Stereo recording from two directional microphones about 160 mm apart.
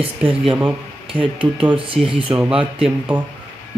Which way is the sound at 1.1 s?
30° right (ahead or behind).